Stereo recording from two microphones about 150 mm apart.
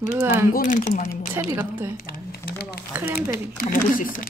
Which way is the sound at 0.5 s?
55° left (ahead or behind).